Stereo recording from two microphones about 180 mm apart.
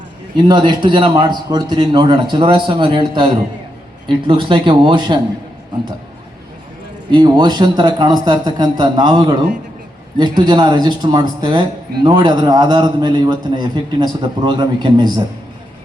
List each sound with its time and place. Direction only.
0.3 s a man's voice: 25° right (ahead or behind)
4.3 s a man's voice: 25° right (ahead or behind)
7.1 s a man's voice: 25° right (ahead or behind)